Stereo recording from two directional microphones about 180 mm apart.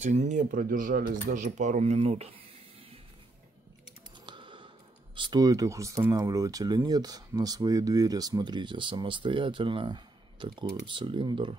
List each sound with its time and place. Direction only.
0.0 s speech: 40° right (ahead or behind)
4.3 s a sound: 25° right (ahead or behind)
5.1 s speech: 25° right (ahead or behind)